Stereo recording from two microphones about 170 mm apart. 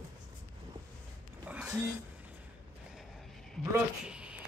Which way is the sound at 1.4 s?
5° right (ahead or behind).